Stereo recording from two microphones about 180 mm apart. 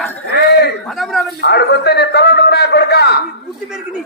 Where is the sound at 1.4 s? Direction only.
70° left (ahead or behind).